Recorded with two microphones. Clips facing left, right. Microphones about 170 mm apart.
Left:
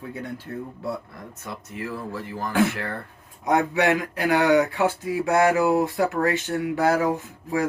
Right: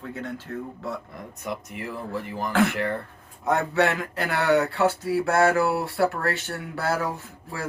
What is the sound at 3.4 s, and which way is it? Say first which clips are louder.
Speech: left 1 dB; 15° left (ahead or behind).